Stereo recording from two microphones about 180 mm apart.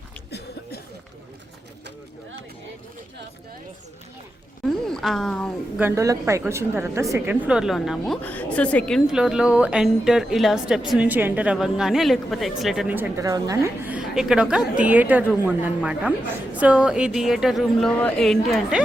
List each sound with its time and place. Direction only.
0.3 s a sound: 65° left (ahead or behind)
4.6 s a woman's voice: centre (ahead or behind)
5.8 s a woman's voice: 15° right (ahead or behind); by 9.0 s 5° left (ahead or behind)
9.0 s a woman's voice: 5° right (ahead or behind)